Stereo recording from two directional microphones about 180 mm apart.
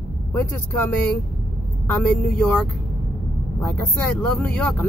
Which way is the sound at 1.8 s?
5° left (ahead or behind).